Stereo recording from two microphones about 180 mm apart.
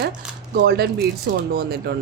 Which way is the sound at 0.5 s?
65° right (ahead or behind).